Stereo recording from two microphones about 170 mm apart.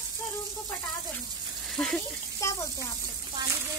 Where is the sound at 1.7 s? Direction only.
5° left (ahead or behind).